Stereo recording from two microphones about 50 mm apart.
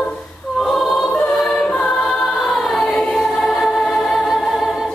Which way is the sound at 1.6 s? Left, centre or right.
Left.